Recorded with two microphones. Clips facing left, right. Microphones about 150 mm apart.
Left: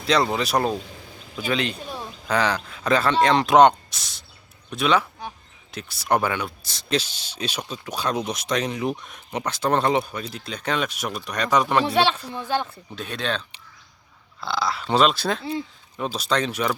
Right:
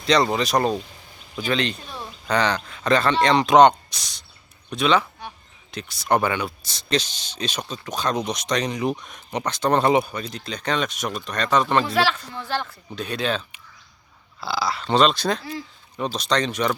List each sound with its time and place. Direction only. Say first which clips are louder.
0.0 s speech: right 2 dB; 5° left (ahead or behind)
9.8 s speech: right 3 dB; 5° right (ahead or behind); by 11.8 s 10° left (ahead or behind)
11.9 s speech: left 1 dB; 25° left (ahead or behind)
12.3 s speech: left 2 dB; 15° left (ahead or behind)
13.0 s speech: right 3 dB; centre (ahead or behind)
14.4 s speech: even; 5° right (ahead or behind)